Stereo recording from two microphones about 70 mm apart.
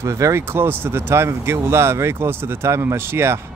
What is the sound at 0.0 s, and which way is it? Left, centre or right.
Speech, right.